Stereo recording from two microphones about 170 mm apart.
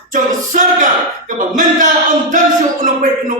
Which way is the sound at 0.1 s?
50° right (ahead or behind).